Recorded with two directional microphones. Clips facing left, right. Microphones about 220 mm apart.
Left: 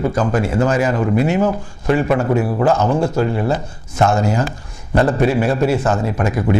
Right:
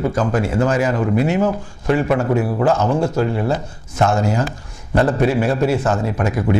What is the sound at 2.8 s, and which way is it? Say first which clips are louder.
Speech: left 1 dB; 40° left (ahead or behind).